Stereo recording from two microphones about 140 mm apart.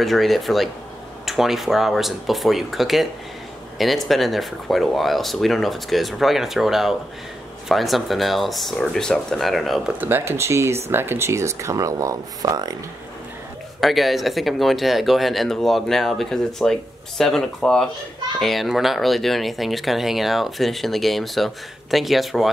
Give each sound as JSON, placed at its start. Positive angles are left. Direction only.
{"t": 0.0, "sound": "speech", "side_deg": 0}
{"t": 9.9, "sound": "speech", "side_deg": -15}
{"t": 13.7, "sound": "speech", "side_deg": 0}